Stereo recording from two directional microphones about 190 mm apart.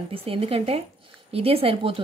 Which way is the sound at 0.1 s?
30° right (ahead or behind).